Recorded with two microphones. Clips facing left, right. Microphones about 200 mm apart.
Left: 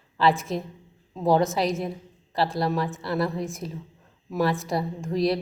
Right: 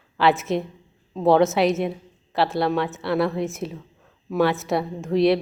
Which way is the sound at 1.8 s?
70° right (ahead or behind).